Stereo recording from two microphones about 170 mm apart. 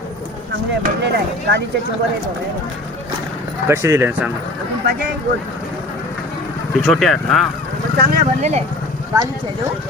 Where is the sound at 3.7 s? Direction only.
15° right (ahead or behind).